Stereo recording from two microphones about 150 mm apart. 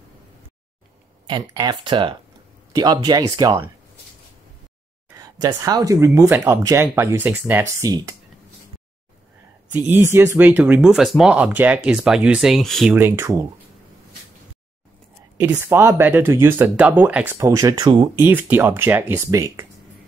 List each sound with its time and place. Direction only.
1.2 s speech: 25° right (ahead or behind)
5.1 s speech: 25° right (ahead or behind)
9.7 s speech: 10° right (ahead or behind)
12.9 s speech: 15° right (ahead or behind)
15.3 s speech: 15° right (ahead or behind)
17.5 s speech: 25° right (ahead or behind)
18.1 s speech: 10° right (ahead or behind)